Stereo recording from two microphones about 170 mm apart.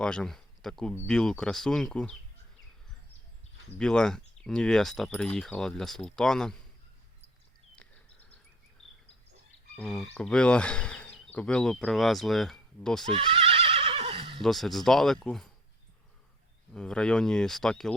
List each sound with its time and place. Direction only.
0.0 s speech: 5° left (ahead or behind)
3.8 s speech: 5° left (ahead or behind)
9.7 s speech: 5° left (ahead or behind)
13.1 s neigh: 30° right (ahead or behind)
14.4 s speech: centre (ahead or behind)
16.7 s speech: 5° left (ahead or behind)